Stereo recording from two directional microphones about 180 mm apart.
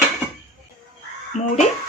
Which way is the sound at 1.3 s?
40° left (ahead or behind).